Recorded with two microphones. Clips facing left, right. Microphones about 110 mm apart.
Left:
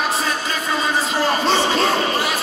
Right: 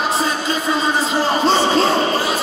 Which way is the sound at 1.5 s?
30° right (ahead or behind).